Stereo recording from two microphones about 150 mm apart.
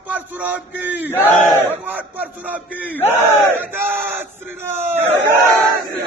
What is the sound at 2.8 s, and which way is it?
Battle cry, 15° left (ahead or behind).